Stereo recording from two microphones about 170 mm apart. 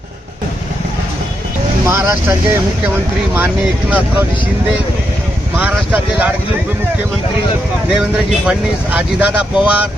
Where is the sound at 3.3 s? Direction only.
10° right (ahead or behind).